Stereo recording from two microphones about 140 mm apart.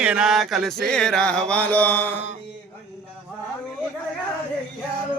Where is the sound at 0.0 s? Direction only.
5° right (ahead or behind); by 2.2 s 15° left (ahead or behind).